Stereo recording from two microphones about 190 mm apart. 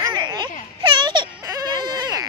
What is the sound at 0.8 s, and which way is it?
Baby cry, 25° right (ahead or behind).